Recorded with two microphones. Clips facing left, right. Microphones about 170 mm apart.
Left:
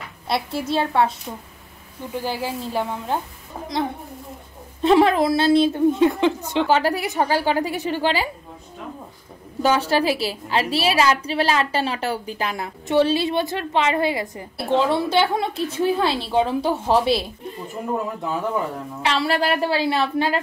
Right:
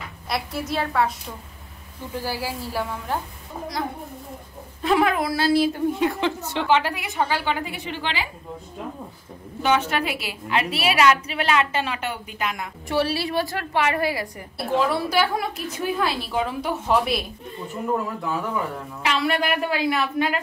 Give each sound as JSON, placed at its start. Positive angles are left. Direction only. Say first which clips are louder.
{"t": 0.3, "sound": "a woman's voice", "louder": "left 4 dB", "side_deg": 30}
{"t": 2.2, "sound": "a woman's voice", "louder": "left 3 dB", "side_deg": 20}
{"t": 4.8, "sound": "a woman's voice", "louder": "left 5 dB", "side_deg": 30}
{"t": 6.7, "sound": "a woman's voice", "louder": "even", "side_deg": 35}
{"t": 9.6, "sound": "a woman's voice", "louder": "left 3 dB", "side_deg": 35}
{"t": 12.8, "sound": "a woman's voice", "louder": "left 5 dB", "side_deg": 20}
{"t": 19.0, "sound": "a woman's voice", "louder": "left 2 dB", "side_deg": 30}